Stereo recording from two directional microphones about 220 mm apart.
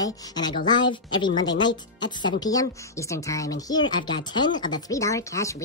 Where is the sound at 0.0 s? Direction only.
20° left (ahead or behind).